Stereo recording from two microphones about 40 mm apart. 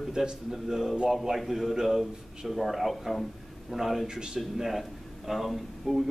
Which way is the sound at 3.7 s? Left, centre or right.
Centre.